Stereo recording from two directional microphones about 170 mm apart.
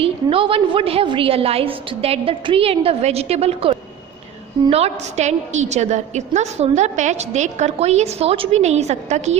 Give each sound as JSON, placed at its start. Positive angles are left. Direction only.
{"t": 0.0, "sound": "a woman's voice", "side_deg": -35}